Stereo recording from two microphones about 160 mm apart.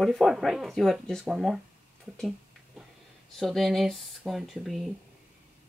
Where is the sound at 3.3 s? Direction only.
Centre (ahead or behind).